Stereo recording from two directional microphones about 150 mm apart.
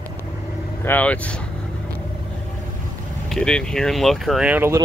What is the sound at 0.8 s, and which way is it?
Speech, 10° left (ahead or behind).